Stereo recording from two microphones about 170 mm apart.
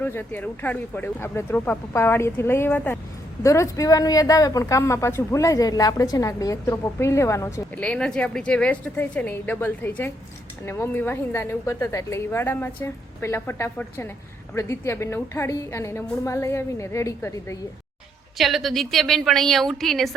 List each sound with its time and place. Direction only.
0.0 s a woman's voice: 10° left (ahead or behind)
7.8 s a woman's voice: 5° left (ahead or behind)
18.3 s a woman's voice: centre (ahead or behind)